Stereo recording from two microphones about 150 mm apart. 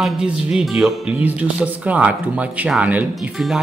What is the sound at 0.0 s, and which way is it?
Speech, 5° right (ahead or behind).